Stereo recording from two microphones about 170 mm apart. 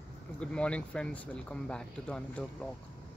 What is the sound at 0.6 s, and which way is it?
Speech, 5° left (ahead or behind).